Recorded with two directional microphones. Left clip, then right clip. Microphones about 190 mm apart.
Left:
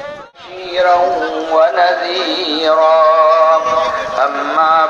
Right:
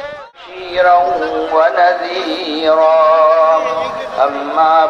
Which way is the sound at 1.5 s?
55° left (ahead or behind).